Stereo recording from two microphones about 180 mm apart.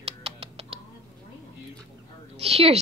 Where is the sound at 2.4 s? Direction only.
35° right (ahead or behind).